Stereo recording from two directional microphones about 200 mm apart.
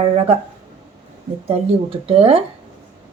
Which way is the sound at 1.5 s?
30° right (ahead or behind).